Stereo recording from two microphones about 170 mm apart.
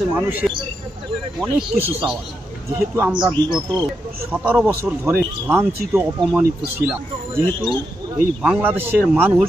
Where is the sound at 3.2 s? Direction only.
25° right (ahead or behind).